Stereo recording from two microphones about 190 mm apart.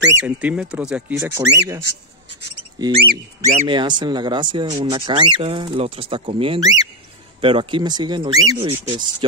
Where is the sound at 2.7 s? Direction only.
20° right (ahead or behind).